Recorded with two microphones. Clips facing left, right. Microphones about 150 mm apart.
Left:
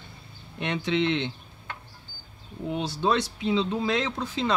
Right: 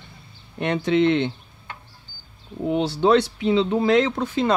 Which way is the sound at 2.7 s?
65° right (ahead or behind).